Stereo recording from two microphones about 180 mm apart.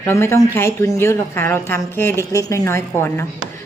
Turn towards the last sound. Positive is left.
turn(degrees=15)  # may be behind; listen again after turning